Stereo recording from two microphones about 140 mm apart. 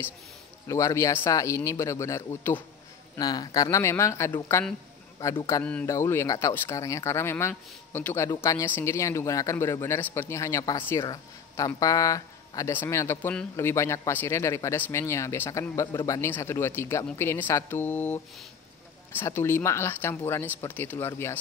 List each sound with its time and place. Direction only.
0.7 s speech: 20° left (ahead or behind)
5.6 s speech: 10° left (ahead or behind)
5.9 s speech: 20° left (ahead or behind)
11.1 s speech: 25° left (ahead or behind)